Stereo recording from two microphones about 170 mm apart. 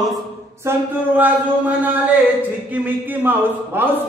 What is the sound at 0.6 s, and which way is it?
Speech, 10° right (ahead or behind).